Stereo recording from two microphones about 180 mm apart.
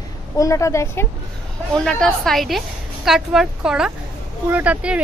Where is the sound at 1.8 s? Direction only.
5° left (ahead or behind).